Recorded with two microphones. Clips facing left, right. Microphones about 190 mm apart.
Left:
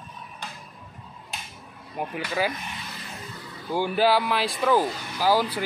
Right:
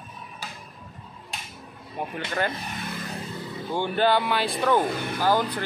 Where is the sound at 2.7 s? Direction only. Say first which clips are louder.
Right 6 dB; 50° right (ahead or behind).